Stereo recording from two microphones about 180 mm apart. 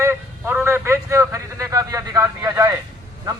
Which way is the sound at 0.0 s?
15° right (ahead or behind).